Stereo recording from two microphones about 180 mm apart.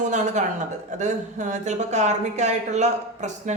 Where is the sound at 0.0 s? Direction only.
40° right (ahead or behind).